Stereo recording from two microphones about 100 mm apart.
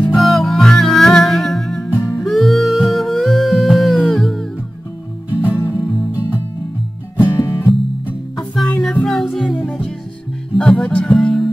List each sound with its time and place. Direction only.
0.0 s music: centre (ahead or behind)
5.3 s music: 15° right (ahead or behind)
7.2 s music: 25° left (ahead or behind)
8.4 s music: 5° left (ahead or behind)
9.6 s music: 15° left (ahead or behind)